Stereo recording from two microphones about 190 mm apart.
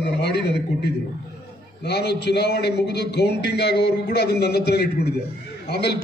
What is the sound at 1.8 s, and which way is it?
A man's voice, 60° left (ahead or behind).